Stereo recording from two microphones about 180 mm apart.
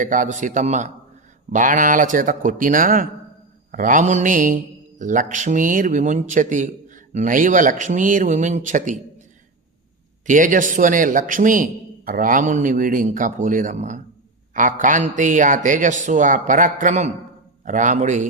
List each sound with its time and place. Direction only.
0.0 s speech: 45° right (ahead or behind)
10.2 s speech: 45° right (ahead or behind)